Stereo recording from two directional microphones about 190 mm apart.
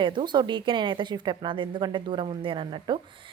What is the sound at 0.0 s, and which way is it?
A woman's voice, 25° right (ahead or behind).